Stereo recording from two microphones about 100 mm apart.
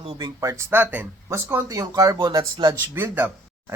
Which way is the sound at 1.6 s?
35° right (ahead or behind).